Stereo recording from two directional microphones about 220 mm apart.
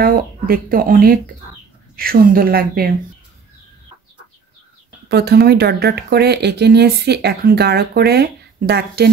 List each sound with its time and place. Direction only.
0.0 s speech: 40° right (ahead or behind)
5.0 s speech: 45° right (ahead or behind)